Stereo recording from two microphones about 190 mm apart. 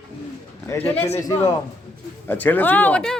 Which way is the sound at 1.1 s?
20° left (ahead or behind).